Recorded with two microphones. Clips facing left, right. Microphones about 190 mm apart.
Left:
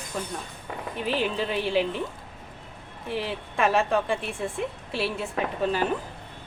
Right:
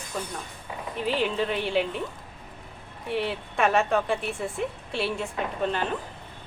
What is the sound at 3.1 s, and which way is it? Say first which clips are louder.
A woman's voice: right 2 dB; centre (ahead or behind).